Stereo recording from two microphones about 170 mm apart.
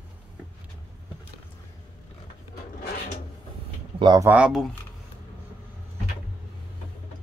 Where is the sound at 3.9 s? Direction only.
25° right (ahead or behind).